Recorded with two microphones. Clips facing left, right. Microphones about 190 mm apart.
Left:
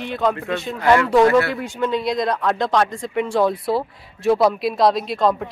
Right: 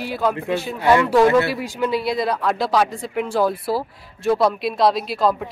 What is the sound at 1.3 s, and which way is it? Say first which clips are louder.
Speech: even; 20° right (ahead or behind).